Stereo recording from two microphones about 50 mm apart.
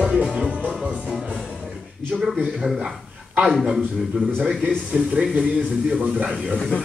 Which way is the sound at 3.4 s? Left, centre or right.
Centre.